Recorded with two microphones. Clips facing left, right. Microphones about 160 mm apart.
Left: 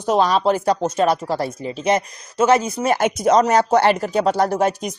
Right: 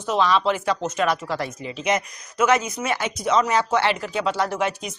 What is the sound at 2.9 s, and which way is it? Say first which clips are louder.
Speech: left 6 dB; 50° left (ahead or behind).